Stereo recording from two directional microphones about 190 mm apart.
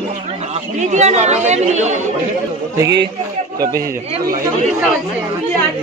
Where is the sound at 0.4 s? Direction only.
35° right (ahead or behind).